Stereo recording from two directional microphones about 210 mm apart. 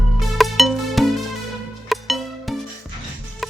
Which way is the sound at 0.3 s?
Centre (ahead or behind).